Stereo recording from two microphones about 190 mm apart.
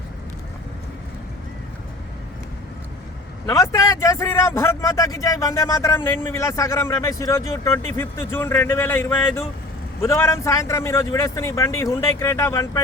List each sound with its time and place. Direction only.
3.4 s a man's voice: 15° left (ahead or behind)